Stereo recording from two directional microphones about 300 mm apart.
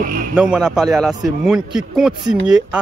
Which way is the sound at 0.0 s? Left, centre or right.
Right.